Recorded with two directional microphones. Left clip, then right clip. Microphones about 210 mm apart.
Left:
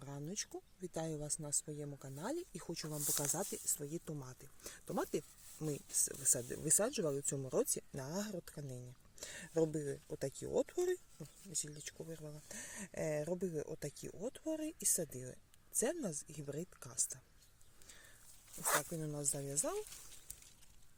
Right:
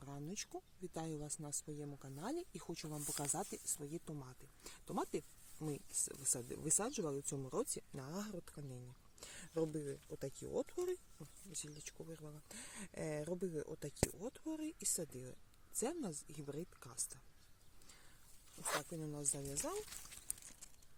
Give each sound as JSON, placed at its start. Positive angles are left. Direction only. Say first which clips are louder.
{"t": 0.0, "sound": "speech", "louder": "left 3 dB", "side_deg": 5}
{"t": 18.6, "sound": "speech", "louder": "left 5 dB", "side_deg": 55}
{"t": 18.9, "sound": "speech", "louder": "left 3 dB", "side_deg": 15}